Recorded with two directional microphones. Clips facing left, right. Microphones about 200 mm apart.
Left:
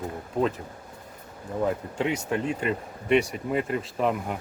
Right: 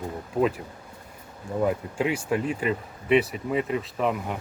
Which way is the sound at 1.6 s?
5° right (ahead or behind).